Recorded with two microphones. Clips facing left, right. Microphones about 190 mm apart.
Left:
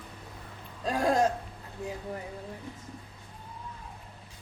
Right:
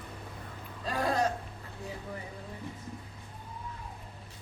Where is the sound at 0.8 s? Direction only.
45° left (ahead or behind).